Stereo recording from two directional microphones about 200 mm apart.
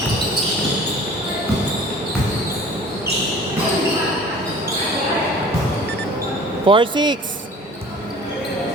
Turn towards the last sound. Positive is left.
turn(degrees=-25)  # may be behind; listen again after turning